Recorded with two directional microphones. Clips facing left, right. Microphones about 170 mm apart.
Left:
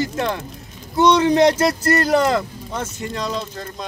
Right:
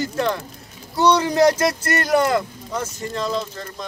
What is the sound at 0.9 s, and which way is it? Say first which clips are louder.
Speech: left 3 dB; 20° left (ahead or behind).